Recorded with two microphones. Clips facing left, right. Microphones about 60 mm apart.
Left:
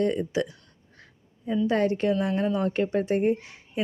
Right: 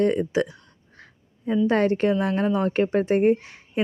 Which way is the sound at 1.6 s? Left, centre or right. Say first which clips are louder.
Right 3 dB; right.